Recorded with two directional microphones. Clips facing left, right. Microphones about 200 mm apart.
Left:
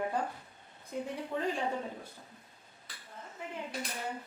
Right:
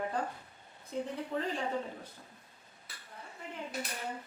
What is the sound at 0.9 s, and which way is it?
Speech, 10° left (ahead or behind).